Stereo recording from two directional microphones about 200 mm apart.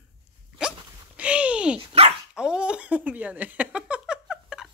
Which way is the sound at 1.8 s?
30° right (ahead or behind).